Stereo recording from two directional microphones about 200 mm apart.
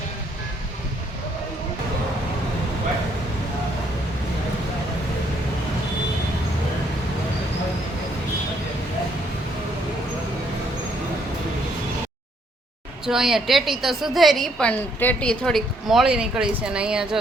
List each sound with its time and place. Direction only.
13.1 s a woman's voice: centre (ahead or behind)